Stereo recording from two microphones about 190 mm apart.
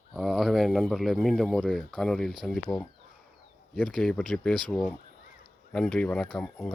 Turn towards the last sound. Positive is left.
turn(degrees=5)  # may be behind; listen again after turning